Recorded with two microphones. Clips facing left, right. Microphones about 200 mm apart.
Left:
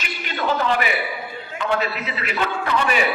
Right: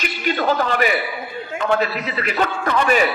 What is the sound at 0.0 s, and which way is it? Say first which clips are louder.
A man's voice: right 5 dB; 40° right (ahead or behind).